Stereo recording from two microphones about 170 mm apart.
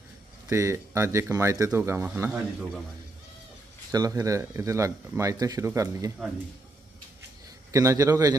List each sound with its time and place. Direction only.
0.5 s speech: 15° right (ahead or behind)
3.9 s speech: 20° right (ahead or behind)
7.7 s speech: 20° right (ahead or behind)